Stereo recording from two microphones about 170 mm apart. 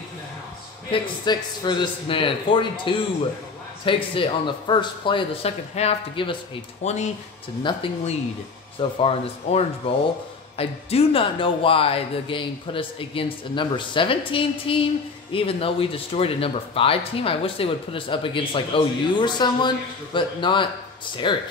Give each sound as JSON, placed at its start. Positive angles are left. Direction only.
{"t": 1.2, "sound": "a man's voice", "side_deg": 25}
{"t": 7.6, "sound": "a man's voice", "side_deg": 30}